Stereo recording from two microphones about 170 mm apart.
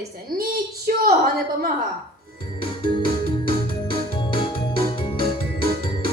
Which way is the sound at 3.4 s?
30° left (ahead or behind).